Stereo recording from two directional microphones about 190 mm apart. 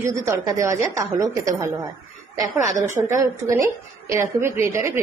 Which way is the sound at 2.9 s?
15° right (ahead or behind).